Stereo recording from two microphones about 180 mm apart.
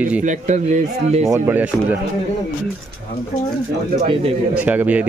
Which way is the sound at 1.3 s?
10° right (ahead or behind).